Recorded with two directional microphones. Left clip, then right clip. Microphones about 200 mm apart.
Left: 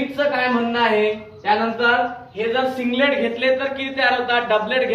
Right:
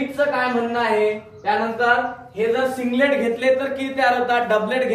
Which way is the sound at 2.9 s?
20° right (ahead or behind).